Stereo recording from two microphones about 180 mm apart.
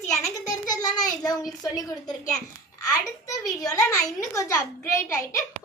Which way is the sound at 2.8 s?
20° left (ahead or behind).